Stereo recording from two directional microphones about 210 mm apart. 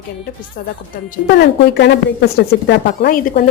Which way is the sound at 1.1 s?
50° left (ahead or behind).